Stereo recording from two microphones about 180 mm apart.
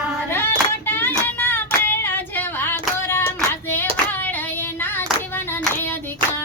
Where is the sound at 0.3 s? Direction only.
10° left (ahead or behind).